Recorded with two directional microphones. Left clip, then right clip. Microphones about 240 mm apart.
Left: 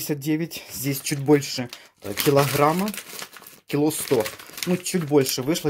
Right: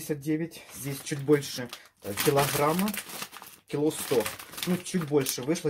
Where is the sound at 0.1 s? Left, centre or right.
Left.